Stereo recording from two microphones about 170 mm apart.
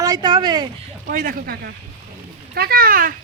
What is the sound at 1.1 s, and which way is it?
Speech, 55° right (ahead or behind).